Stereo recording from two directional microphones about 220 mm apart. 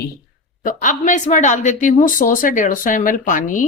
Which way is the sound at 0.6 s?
40° left (ahead or behind).